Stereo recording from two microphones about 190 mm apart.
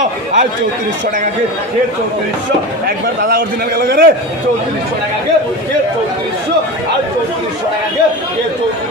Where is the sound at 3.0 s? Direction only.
50° right (ahead or behind).